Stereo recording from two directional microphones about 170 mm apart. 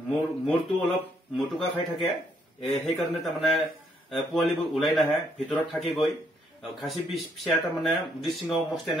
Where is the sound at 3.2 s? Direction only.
Centre (ahead or behind).